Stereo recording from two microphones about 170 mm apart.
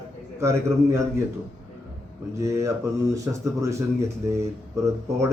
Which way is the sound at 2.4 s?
15° right (ahead or behind).